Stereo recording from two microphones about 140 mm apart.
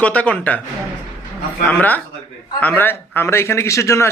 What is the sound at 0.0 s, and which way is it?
Speech, 10° left (ahead or behind).